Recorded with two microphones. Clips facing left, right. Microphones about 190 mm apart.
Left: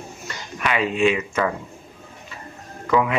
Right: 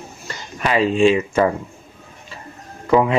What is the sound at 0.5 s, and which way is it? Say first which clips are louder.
Speech: right 5 dB; 30° right (ahead or behind).